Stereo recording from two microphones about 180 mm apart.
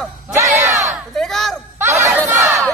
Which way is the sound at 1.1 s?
Centre (ahead or behind).